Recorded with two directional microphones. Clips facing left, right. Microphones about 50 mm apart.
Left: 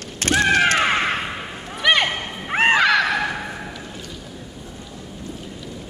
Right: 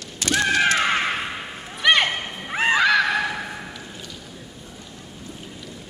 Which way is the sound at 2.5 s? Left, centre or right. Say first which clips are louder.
Left 3 dB; left.